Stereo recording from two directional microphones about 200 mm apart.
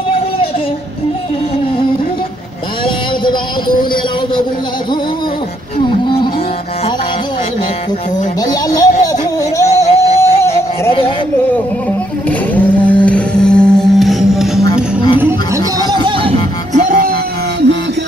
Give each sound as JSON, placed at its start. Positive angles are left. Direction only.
{"t": 2.8, "sound": "music", "side_deg": 25}
{"t": 5.9, "sound": "music", "side_deg": 25}
{"t": 8.4, "sound": "music", "side_deg": 20}
{"t": 12.3, "sound": "a sound", "side_deg": 5}
{"t": 15.1, "sound": "a sound", "side_deg": -10}
{"t": 16.0, "sound": "music", "side_deg": -25}
{"t": 16.7, "sound": "music", "side_deg": -40}